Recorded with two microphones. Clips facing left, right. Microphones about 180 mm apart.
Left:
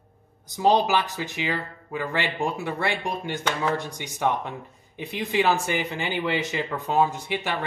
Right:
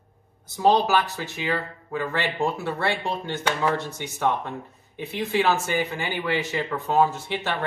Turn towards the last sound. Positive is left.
turn(degrees=15)  # may be behind; listen again after turning